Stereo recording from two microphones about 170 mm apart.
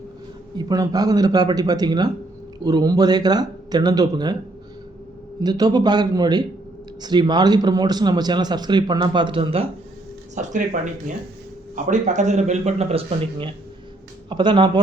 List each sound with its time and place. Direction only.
0.5 s speech: 20° right (ahead or behind)
5.4 s speech: 25° right (ahead or behind)
10.3 s speech: 45° right (ahead or behind); by 14.7 s 30° right (ahead or behind)